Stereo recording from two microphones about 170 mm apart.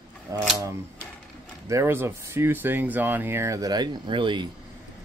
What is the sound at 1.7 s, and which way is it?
Speech, 15° right (ahead or behind).